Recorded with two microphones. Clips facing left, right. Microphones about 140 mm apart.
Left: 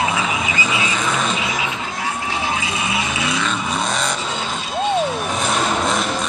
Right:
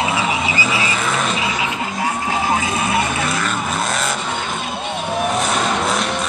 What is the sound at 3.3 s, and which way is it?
Vehicle, 5° right (ahead or behind).